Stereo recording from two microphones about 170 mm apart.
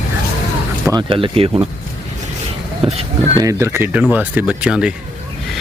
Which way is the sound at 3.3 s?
15° right (ahead or behind).